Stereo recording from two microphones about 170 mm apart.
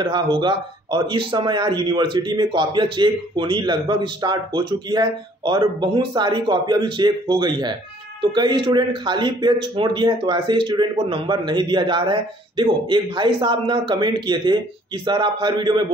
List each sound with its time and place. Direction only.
0.0 s a man's voice: 30° right (ahead or behind)